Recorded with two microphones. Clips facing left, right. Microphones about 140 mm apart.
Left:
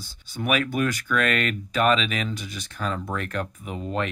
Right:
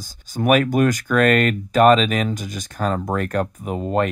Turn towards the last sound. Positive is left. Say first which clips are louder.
# right 8 dB
turn(degrees=-45)  # may be behind; listen again after turning